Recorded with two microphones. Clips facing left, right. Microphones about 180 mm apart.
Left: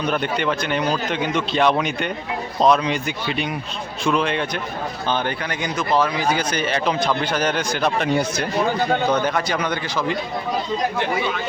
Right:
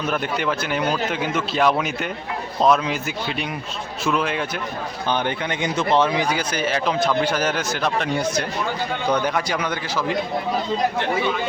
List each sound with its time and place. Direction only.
0.1 s a man's voice: 5° right (ahead or behind)
5.0 s speech: 15° right (ahead or behind)
6.3 s a man's voice: 5° right (ahead or behind)
7.9 s speech: 5° left (ahead or behind)
9.2 s a man's voice: 10° right (ahead or behind)